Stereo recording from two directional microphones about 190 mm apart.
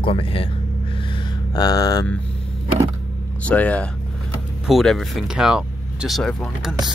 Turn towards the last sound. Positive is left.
turn(degrees=0)  # may be behind; listen again after turning